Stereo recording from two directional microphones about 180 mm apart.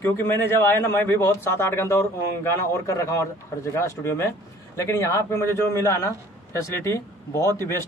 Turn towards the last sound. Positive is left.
turn(degrees=15)  # may be behind; listen again after turning